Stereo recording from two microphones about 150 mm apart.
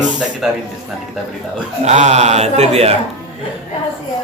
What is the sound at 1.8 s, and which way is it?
Speech, 50° right (ahead or behind).